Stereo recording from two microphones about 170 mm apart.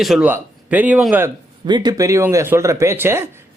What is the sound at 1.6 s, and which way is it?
Speech, 25° right (ahead or behind).